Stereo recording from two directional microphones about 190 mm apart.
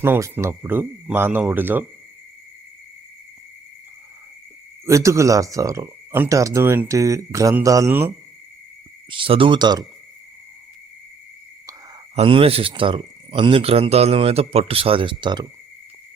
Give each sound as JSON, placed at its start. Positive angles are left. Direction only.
{"t": 0.0, "sound": "speech", "side_deg": -10}
{"t": 4.9, "sound": "speech", "side_deg": -15}
{"t": 9.0, "sound": "speech", "side_deg": -25}
{"t": 12.1, "sound": "speech", "side_deg": -30}